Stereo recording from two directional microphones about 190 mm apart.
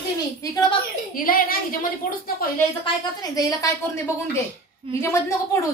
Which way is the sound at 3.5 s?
15° left (ahead or behind).